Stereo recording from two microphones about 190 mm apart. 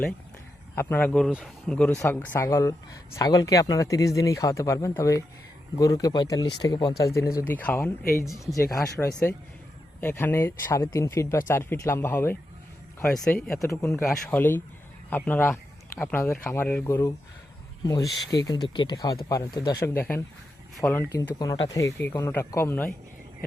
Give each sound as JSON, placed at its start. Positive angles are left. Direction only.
{"t": 0.8, "sound": "speech", "side_deg": 10}
{"t": 8.7, "sound": "speech", "side_deg": 15}